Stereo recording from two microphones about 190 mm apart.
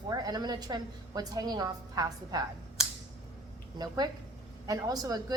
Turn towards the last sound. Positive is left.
turn(degrees=-20)  # may be behind; listen again after turning